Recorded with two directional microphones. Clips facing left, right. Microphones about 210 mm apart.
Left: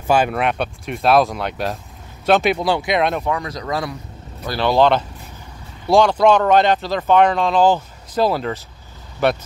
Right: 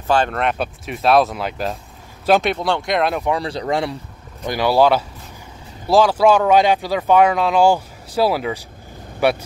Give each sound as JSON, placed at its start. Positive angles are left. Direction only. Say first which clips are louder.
{"t": 0.0, "sound": "speech", "louder": "left 1 dB", "side_deg": 10}
{"t": 3.3, "sound": "speech", "louder": "right 3 dB", "side_deg": -30}
{"t": 4.5, "sound": "speech", "louder": "even", "side_deg": -10}